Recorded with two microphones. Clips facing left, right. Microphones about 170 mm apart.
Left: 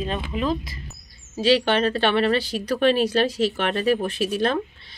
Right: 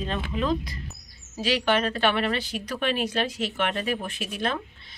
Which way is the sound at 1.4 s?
30° left (ahead or behind).